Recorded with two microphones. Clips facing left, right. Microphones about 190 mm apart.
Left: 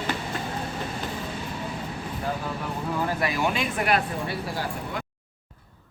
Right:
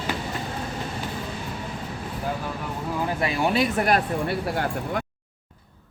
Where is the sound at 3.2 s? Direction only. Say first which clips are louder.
Right 3 dB; 30° right (ahead or behind).